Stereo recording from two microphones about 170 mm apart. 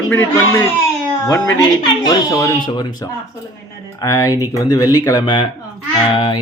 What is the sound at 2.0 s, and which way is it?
Speech, 20° left (ahead or behind).